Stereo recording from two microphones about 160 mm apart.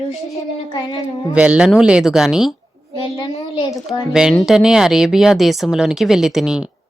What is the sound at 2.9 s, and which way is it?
Speech, 30° left (ahead or behind).